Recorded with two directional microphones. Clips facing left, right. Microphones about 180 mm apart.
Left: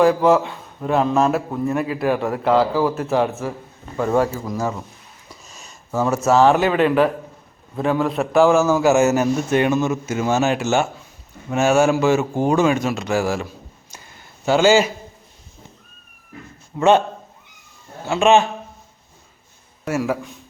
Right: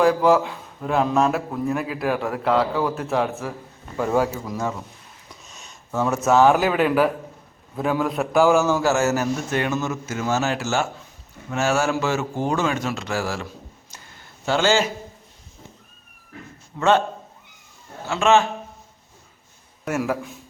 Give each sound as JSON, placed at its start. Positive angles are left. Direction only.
{"t": 0.0, "sound": "speech", "side_deg": 0}
{"t": 8.8, "sound": "a man's voice", "side_deg": 15}
{"t": 16.7, "sound": "a man's voice", "side_deg": 15}
{"t": 18.0, "sound": "a man's voice", "side_deg": 15}
{"t": 19.8, "sound": "a man's voice", "side_deg": 0}